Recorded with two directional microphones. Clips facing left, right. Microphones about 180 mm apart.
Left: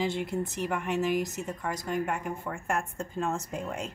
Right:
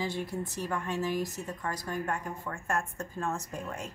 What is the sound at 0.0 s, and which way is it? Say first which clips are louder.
Speech: left 4 dB; 20° left (ahead or behind).